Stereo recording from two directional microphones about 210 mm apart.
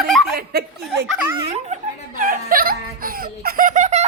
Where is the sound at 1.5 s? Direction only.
35° right (ahead or behind).